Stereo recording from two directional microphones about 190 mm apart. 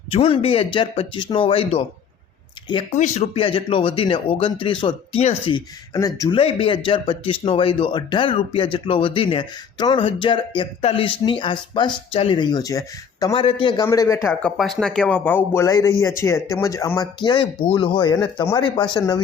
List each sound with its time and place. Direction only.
0.1 s speech: 30° left (ahead or behind)
2.9 s speech: 35° left (ahead or behind); by 14.3 s 15° left (ahead or behind)
14.3 s speech: centre (ahead or behind); by 19.2 s 20° left (ahead or behind)